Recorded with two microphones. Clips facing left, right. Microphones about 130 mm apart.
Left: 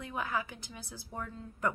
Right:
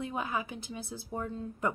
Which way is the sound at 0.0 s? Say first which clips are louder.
Right 2 dB; 20° right (ahead or behind).